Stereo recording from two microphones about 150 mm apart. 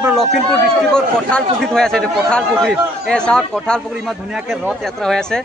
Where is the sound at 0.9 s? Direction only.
5° left (ahead or behind).